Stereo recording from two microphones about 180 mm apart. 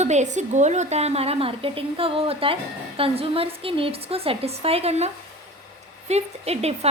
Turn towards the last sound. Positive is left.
turn(degrees=-35)  # may be behind; listen again after turning